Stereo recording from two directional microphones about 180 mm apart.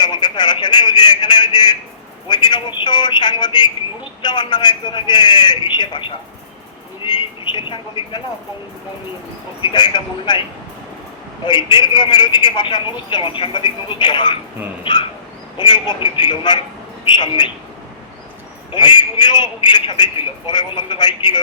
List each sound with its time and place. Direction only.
0.0 s a man's voice: 25° left (ahead or behind)
9.6 s a man's voice: 25° left (ahead or behind)
11.4 s a man's voice: 25° left (ahead or behind)
15.5 s a man's voice: 25° left (ahead or behind)
18.7 s a man's voice: 25° left (ahead or behind)